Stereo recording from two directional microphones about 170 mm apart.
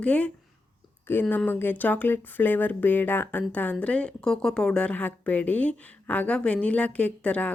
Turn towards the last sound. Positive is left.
turn(degrees=10)  # may be behind; listen again after turning